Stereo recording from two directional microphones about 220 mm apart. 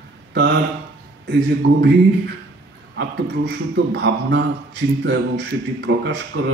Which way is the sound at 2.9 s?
50° right (ahead or behind).